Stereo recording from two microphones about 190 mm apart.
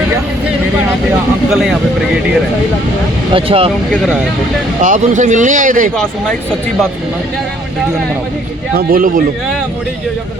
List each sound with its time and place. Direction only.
3.3 s speech: 30° right (ahead or behind)
3.9 s speech: centre (ahead or behind)
4.8 s speech: 40° right (ahead or behind)
8.7 s speech: 50° right (ahead or behind)